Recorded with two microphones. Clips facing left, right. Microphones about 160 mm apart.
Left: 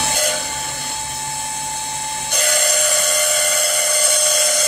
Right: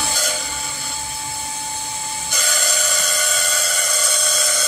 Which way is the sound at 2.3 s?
60° left (ahead or behind).